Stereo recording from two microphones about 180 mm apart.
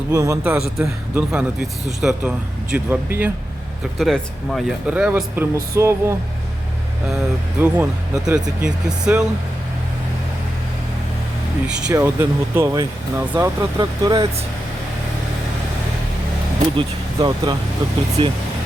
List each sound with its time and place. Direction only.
0.1 s speech: 15° right (ahead or behind)
3.9 s speech: centre (ahead or behind); by 6.1 s 15° right (ahead or behind)
7.6 s speech: 5° right (ahead or behind)
11.9 s speech: 15° right (ahead or behind)
16.7 s speech: 20° right (ahead or behind)